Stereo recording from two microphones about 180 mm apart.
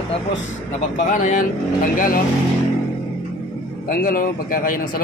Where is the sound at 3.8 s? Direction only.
50° left (ahead or behind).